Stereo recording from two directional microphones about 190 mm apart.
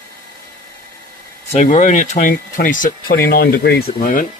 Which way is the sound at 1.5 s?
40° left (ahead or behind).